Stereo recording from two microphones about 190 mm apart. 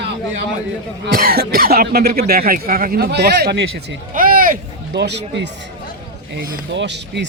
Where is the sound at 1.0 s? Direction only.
50° right (ahead or behind).